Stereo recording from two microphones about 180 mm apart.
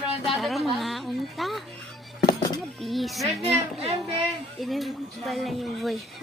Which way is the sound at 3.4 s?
35° right (ahead or behind).